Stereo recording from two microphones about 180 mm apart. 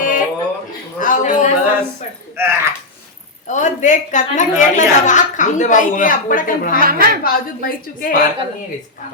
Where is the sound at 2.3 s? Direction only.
15° right (ahead or behind).